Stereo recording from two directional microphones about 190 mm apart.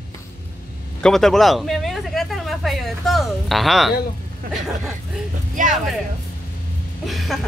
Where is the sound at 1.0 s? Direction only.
Centre (ahead or behind).